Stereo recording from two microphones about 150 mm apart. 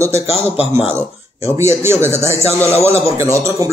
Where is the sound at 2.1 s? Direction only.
45° left (ahead or behind).